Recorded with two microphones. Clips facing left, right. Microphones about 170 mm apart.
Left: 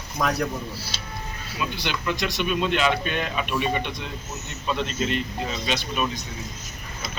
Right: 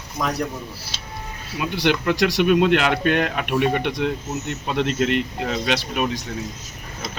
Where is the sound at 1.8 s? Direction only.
75° right (ahead or behind).